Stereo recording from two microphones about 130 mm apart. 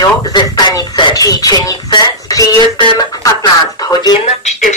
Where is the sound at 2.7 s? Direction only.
35° left (ahead or behind).